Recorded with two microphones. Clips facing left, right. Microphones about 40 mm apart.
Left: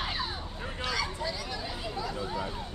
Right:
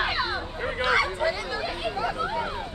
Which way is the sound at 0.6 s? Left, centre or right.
Right.